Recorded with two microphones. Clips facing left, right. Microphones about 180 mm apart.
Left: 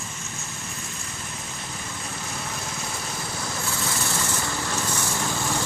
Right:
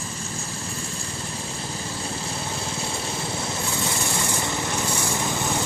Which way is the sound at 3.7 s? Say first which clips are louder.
Right 2 dB; 20° right (ahead or behind).